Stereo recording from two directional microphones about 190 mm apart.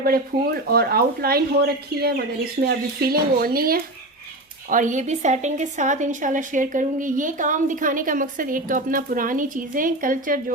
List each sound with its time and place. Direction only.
0.0 s speech: 50° right (ahead or behind)